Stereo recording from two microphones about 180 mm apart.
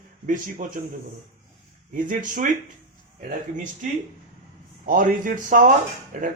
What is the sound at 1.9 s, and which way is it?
Speech, 50° right (ahead or behind).